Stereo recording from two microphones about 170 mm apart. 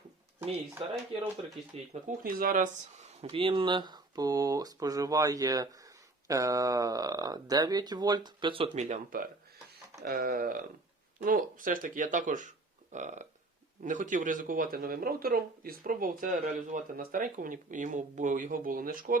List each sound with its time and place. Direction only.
0.8 s speech: 30° right (ahead or behind)
1.9 s speech: 50° right (ahead or behind)
3.2 s speech: 30° right (ahead or behind); by 9.3 s 50° right (ahead or behind)
10.0 s speech: 65° right (ahead or behind)